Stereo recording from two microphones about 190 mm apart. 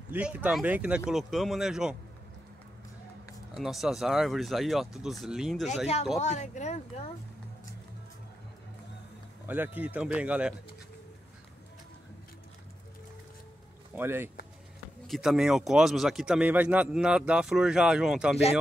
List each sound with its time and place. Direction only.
0.1 s speech: 10° right (ahead or behind)
3.5 s speech: centre (ahead or behind)
6.1 s speech: 35° left (ahead or behind)
9.5 s speech: 10° right (ahead or behind)
13.9 s speech: 10° right (ahead or behind)
15.0 s speech: centre (ahead or behind)